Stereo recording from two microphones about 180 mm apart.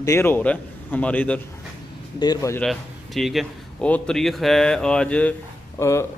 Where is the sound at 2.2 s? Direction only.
20° left (ahead or behind).